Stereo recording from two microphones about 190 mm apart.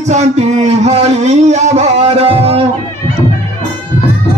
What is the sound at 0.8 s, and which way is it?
Music, 35° right (ahead or behind).